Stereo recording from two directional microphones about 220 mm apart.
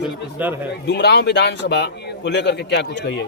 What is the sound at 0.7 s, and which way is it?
A man's voice, 50° left (ahead or behind).